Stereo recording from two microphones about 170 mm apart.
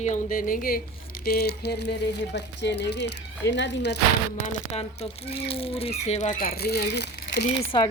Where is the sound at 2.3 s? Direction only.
90° left.